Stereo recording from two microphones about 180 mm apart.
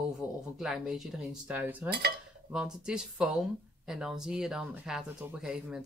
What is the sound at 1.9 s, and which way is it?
Cutlery, 60° right (ahead or behind).